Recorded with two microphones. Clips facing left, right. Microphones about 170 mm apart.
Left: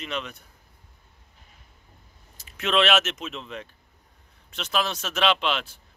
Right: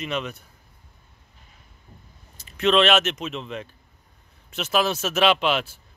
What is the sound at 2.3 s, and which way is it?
A man's voice, 5° left (ahead or behind).